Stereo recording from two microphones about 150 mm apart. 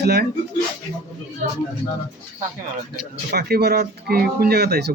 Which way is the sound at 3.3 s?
90° right.